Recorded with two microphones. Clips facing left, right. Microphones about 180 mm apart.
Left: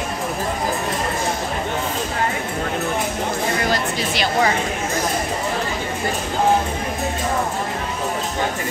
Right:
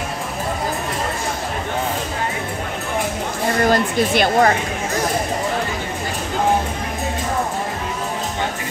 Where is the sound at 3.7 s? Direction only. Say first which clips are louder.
Right 5 dB; 50° right (ahead or behind).